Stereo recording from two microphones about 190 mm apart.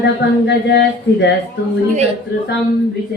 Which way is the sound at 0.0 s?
65° left (ahead or behind).